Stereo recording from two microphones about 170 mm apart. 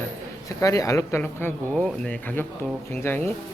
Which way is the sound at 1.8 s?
5° left (ahead or behind).